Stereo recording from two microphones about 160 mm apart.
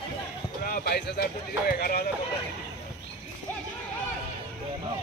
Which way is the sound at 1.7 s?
70° left (ahead or behind).